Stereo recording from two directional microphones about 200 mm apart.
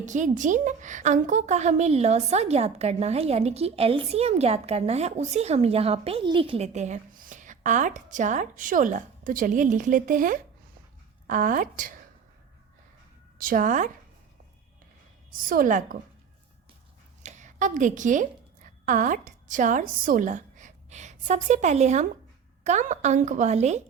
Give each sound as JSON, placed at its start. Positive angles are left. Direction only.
{"t": 0.0, "sound": "a woman's voice", "side_deg": -40}
{"t": 13.4, "sound": "a woman's voice", "side_deg": -40}
{"t": 15.3, "sound": "a woman's voice", "side_deg": -45}
{"t": 17.2, "sound": "a woman's voice", "side_deg": -40}